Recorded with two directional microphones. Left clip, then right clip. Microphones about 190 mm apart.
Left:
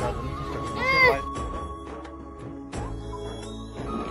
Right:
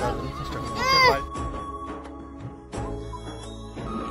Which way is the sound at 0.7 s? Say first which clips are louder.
Right 1 dB; 25° right (ahead or behind).